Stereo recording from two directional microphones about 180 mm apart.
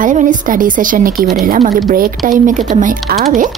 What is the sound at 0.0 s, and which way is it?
A woman's voice, 45° right (ahead or behind).